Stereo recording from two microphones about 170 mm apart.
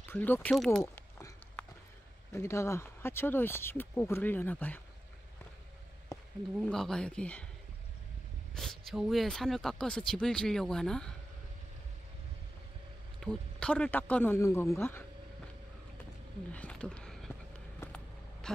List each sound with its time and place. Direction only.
0.1 s speech: 10° left (ahead or behind)
2.3 s speech: 15° left (ahead or behind)
6.1 s a sound: 20° left (ahead or behind)
6.6 s speech: 5° left (ahead or behind)
8.5 s speech: centre (ahead or behind)
13.2 s speech: 5° left (ahead or behind)
16.5 s a sound: 5° left (ahead or behind)
17.7 s vehicle: 5° left (ahead or behind)